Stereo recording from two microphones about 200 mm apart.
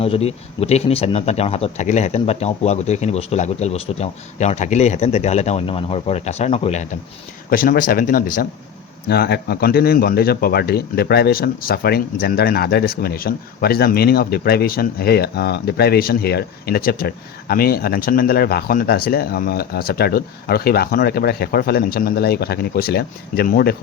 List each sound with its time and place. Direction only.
0.0 s speech: 30° left (ahead or behind)
9.0 s speech: 55° left (ahead or behind)